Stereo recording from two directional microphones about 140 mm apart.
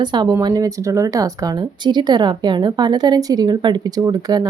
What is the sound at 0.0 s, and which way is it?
A woman's voice, 30° right (ahead or behind).